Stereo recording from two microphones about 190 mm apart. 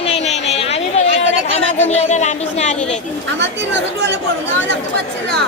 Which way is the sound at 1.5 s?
35° left (ahead or behind).